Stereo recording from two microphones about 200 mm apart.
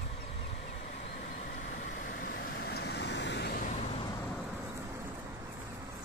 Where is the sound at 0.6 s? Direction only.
40° left (ahead or behind).